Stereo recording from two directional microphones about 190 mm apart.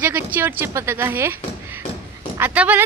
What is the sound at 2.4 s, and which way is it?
Speech, 10° right (ahead or behind).